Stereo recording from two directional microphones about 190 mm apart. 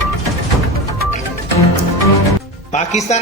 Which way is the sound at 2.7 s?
35° left (ahead or behind).